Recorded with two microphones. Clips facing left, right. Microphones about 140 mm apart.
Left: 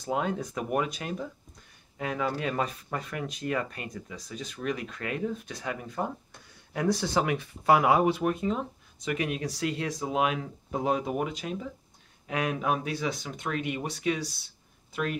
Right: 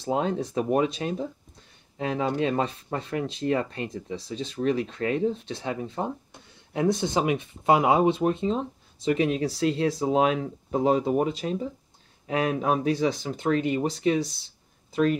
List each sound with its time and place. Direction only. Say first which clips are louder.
0.0 s speech: right 4 dB; 30° right (ahead or behind)